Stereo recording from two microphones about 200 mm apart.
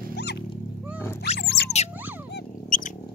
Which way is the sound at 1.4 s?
55° left (ahead or behind).